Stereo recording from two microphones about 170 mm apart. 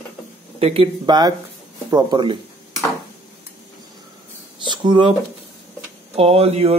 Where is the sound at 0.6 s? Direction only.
35° right (ahead or behind).